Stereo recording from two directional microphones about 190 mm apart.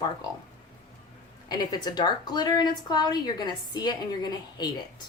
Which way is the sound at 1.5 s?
20° left (ahead or behind).